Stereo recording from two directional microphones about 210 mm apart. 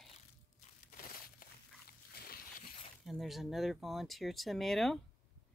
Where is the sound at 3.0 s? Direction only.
Centre (ahead or behind).